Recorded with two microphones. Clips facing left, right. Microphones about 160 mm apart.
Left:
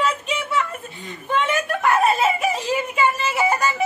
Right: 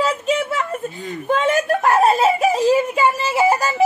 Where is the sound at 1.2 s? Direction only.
40° right (ahead or behind).